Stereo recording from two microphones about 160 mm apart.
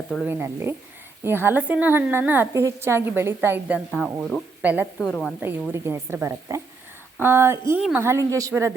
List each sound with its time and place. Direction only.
0.3 s a woman's voice: 15° right (ahead or behind); by 4.4 s 5° left (ahead or behind)
4.6 s a woman's voice: 10° right (ahead or behind)
4.9 s a woman's voice: 5° left (ahead or behind)
5.7 s a woman's voice: 15° right (ahead or behind)